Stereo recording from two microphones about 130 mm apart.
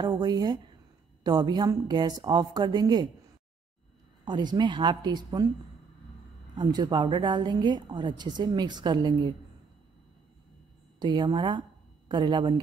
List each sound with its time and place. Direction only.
0.0 s a woman's voice: 30° right (ahead or behind)
4.2 s a woman's voice: 35° right (ahead or behind)
6.5 s a woman's voice: 35° right (ahead or behind)
11.0 s a woman's voice: 35° right (ahead or behind)